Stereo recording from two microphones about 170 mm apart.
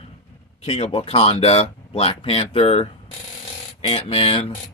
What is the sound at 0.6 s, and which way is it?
Speech, 35° left (ahead or behind).